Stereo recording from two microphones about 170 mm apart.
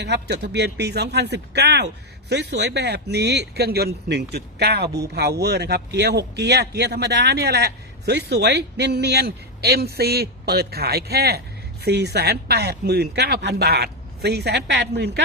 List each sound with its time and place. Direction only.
0.0 s speech: 80° right